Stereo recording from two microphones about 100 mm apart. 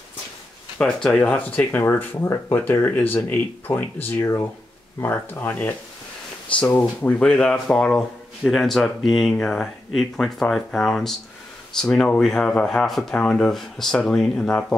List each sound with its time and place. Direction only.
0.7 s speech: 5° left (ahead or behind)
6.8 s speech: 15° left (ahead or behind)